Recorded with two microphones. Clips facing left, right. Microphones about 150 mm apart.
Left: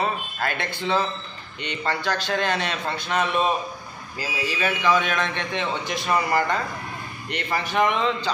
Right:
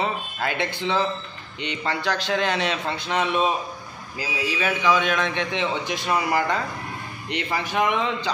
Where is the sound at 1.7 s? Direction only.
15° right (ahead or behind).